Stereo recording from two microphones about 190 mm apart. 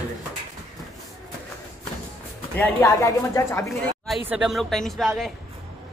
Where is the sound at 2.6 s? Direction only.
15° left (ahead or behind).